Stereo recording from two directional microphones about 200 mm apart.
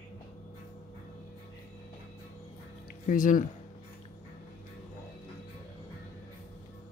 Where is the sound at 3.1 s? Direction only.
40° left (ahead or behind).